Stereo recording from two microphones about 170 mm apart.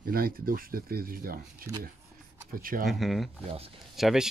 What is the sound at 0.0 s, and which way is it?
Speech, 60° right (ahead or behind).